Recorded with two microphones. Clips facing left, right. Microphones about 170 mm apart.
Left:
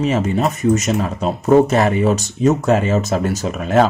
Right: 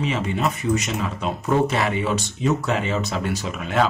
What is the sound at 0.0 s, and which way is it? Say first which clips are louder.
Speech: left 6 dB; 40° left (ahead or behind).